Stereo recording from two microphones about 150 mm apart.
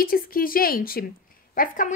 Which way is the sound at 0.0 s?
75° left (ahead or behind).